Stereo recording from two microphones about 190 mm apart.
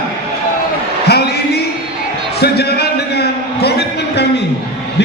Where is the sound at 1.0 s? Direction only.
60° left (ahead or behind).